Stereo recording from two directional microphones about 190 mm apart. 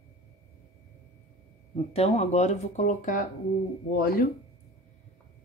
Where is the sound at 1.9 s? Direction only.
35° left (ahead or behind); by 4.3 s 50° left (ahead or behind).